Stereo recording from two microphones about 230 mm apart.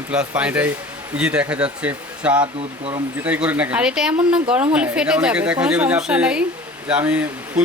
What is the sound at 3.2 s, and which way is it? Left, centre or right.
A woman's voice, centre.